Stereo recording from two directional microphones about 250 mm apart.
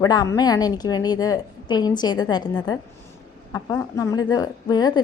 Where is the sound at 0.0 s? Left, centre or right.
Centre.